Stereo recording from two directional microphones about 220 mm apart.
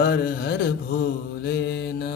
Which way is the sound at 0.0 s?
45° left (ahead or behind).